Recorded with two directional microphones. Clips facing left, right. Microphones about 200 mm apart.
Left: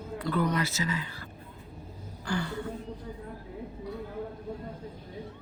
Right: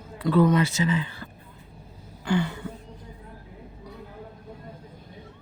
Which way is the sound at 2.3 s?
20° right (ahead or behind).